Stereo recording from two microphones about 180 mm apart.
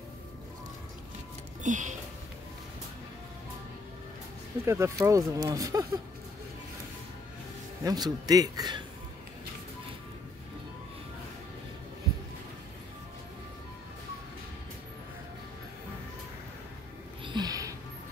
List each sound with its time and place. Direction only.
1.6 s music: 45° right (ahead or behind)
4.6 s speech: 15° right (ahead or behind)
7.8 s a man's voice: 20° right (ahead or behind)
17.2 s music: 25° right (ahead or behind)